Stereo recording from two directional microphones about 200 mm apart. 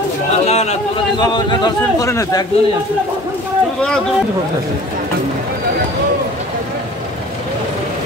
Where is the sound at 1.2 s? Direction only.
20° left (ahead or behind).